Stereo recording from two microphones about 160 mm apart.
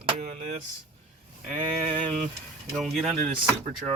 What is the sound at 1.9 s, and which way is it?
Speech, 30° right (ahead or behind).